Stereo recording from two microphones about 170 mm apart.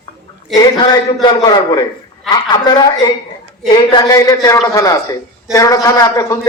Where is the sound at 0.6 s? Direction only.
25° left (ahead or behind).